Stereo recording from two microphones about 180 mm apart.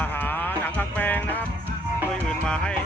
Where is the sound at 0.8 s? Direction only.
10° left (ahead or behind).